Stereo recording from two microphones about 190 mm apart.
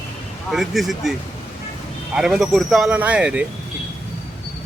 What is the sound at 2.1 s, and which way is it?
Speech, 5° right (ahead or behind).